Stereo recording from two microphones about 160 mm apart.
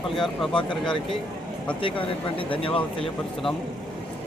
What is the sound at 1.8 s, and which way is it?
Speech, 35° left (ahead or behind).